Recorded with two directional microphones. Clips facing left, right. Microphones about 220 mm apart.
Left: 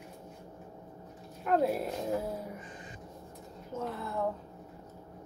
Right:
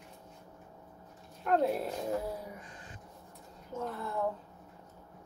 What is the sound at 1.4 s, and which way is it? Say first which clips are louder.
Speech: left 1 dB; 5° left (ahead or behind).